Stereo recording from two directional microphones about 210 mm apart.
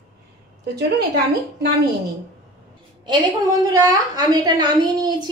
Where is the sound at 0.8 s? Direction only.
55° right (ahead or behind).